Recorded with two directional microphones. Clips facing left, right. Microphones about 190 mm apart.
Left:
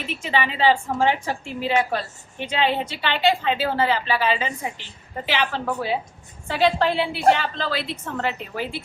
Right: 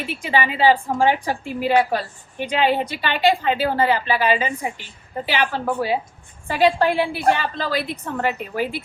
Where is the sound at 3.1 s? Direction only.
50° right (ahead or behind).